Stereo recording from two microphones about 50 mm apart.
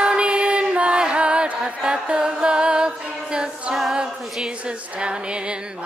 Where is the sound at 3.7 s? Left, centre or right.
Centre.